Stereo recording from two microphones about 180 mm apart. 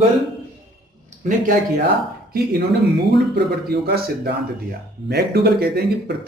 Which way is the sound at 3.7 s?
60° right (ahead or behind).